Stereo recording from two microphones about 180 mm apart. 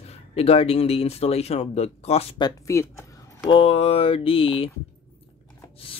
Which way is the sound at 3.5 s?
30° left (ahead or behind).